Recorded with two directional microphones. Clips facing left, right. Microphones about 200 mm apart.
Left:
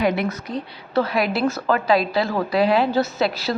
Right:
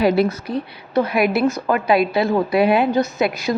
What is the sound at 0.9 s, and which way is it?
A woman's voice, 20° right (ahead or behind).